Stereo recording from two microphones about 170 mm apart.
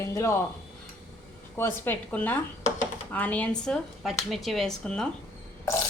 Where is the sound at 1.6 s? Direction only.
15° left (ahead or behind).